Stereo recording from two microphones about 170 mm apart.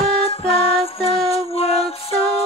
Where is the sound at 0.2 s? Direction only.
35° left (ahead or behind).